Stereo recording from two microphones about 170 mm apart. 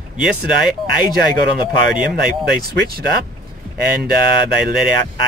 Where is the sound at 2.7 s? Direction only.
65° right (ahead or behind).